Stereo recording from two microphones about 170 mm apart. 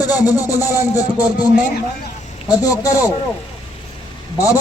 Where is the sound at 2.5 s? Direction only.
20° left (ahead or behind).